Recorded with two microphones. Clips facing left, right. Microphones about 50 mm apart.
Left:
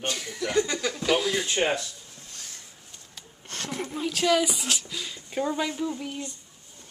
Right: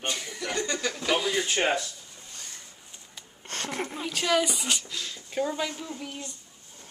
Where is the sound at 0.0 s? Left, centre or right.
Centre.